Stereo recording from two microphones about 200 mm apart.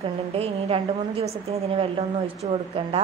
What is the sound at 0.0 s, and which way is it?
A woman's voice, 30° right (ahead or behind).